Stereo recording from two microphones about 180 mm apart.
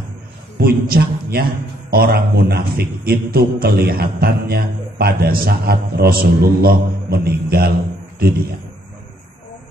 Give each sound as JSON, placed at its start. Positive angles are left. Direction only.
{"t": 0.6, "sound": "a man's voice", "side_deg": -60}